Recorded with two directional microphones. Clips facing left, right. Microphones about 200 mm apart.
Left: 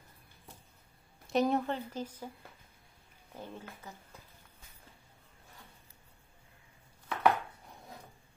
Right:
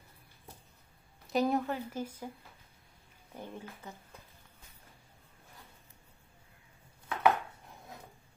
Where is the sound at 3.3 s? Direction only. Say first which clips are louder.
Right 1 dB; 15° right (ahead or behind).